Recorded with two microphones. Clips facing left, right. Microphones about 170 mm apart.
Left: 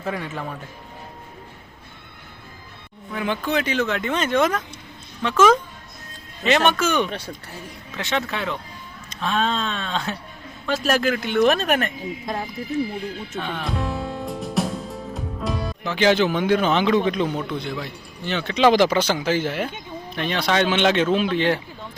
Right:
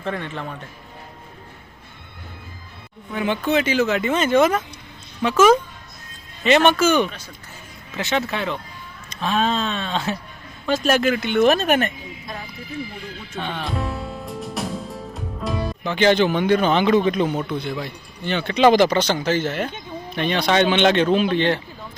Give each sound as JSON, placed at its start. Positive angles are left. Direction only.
{"t": 0.0, "sound": "speech", "side_deg": 5}
{"t": 3.1, "sound": "speech", "side_deg": 0}
{"t": 6.4, "sound": "speech", "side_deg": 0}
{"t": 12.3, "sound": "speech", "side_deg": 45}
{"t": 13.3, "sound": "music", "side_deg": 0}
{"t": 15.1, "sound": "speech", "side_deg": 0}